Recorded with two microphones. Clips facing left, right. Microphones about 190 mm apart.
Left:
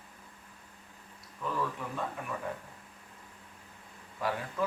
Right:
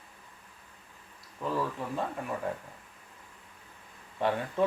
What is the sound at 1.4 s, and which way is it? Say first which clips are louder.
Speech: right 3 dB; 35° right (ahead or behind).